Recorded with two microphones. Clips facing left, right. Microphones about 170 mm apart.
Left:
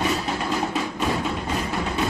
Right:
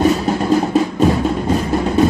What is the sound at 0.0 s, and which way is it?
Music, 40° right (ahead or behind).